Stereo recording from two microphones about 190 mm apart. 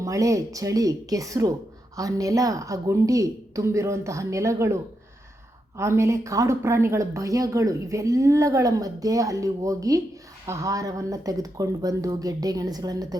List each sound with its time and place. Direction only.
0.0 s speech: 15° right (ahead or behind)